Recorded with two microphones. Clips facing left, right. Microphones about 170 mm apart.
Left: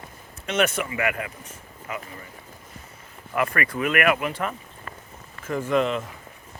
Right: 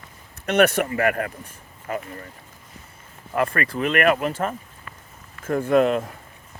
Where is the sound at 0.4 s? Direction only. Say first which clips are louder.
Right 5 dB; 60° right (ahead or behind).